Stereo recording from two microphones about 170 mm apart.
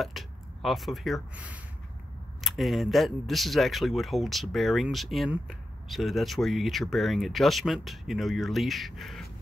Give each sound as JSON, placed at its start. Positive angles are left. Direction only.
{"t": 0.0, "sound": "speech", "side_deg": 0}